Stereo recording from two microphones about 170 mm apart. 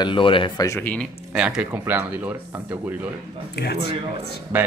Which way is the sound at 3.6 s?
70° left (ahead or behind).